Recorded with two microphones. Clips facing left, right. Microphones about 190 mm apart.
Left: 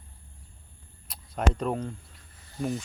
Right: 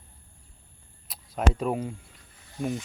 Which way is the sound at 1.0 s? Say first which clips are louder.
Right 1 dB; centre (ahead or behind).